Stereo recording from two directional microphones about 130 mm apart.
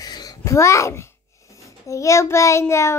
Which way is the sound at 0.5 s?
20° left (ahead or behind).